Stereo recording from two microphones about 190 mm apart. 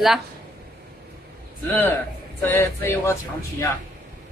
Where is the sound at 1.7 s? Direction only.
10° left (ahead or behind).